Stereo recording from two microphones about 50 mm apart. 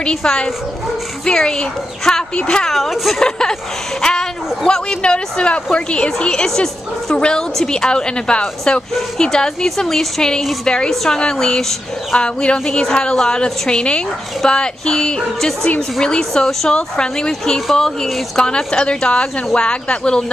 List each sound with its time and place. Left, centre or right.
0.0 s speech: centre
2.7 s speech: centre
3.2 s speech: centre